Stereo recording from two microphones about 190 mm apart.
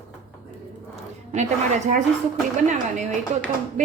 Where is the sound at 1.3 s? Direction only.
35° right (ahead or behind).